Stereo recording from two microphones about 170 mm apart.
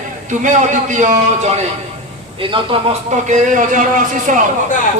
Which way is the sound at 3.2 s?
50° right (ahead or behind).